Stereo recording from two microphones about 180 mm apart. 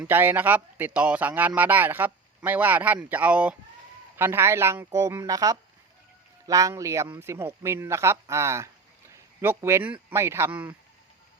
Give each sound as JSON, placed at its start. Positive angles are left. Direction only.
{"t": 0.0, "sound": "a man's voice", "side_deg": -10}